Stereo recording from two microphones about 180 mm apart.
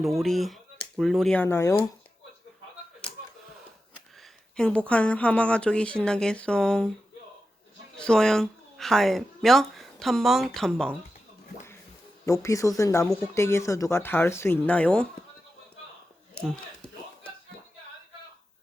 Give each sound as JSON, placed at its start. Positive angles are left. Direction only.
{"t": 0.0, "sound": "speech", "side_deg": 0}
{"t": 4.5, "sound": "speech", "side_deg": 5}
{"t": 7.9, "sound": "speech", "side_deg": 5}
{"t": 12.2, "sound": "speech", "side_deg": 15}